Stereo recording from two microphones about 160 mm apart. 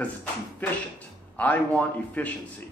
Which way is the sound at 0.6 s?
10° left (ahead or behind).